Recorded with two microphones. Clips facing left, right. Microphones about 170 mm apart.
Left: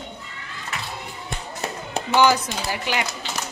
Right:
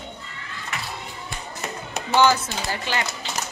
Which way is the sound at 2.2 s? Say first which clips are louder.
Even; 15° left (ahead or behind).